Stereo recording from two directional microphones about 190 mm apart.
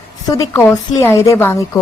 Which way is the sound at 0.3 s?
15° left (ahead or behind).